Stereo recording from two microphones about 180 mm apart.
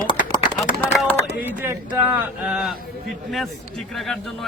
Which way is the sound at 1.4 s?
10° right (ahead or behind).